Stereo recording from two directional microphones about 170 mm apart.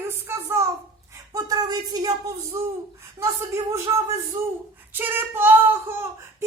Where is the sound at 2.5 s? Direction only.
20° right (ahead or behind).